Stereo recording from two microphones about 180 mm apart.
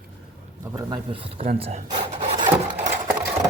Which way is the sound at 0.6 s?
20° right (ahead or behind).